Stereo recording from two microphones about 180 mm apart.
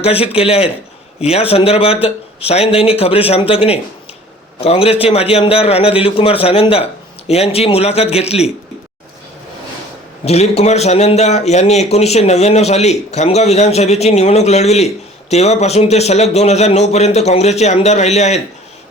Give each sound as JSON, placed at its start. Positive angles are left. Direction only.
{"t": 0.0, "sound": "a man's voice", "side_deg": 35}
{"t": 10.2, "sound": "a man's voice", "side_deg": 35}